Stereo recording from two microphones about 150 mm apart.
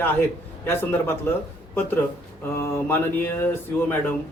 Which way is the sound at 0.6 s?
15° left (ahead or behind).